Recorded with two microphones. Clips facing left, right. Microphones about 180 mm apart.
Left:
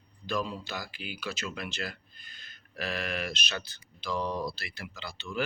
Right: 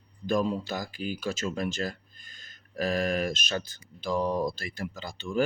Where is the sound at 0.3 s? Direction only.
45° right (ahead or behind).